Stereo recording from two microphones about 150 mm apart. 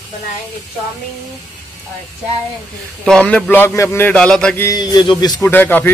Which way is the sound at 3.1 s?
5° left (ahead or behind).